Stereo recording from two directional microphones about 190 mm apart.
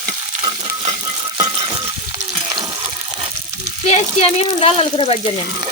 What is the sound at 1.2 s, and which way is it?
Rattle, 25° right (ahead or behind).